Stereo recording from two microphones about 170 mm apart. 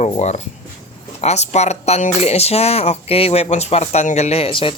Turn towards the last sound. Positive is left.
turn(degrees=35)  # may be behind; listen again after turning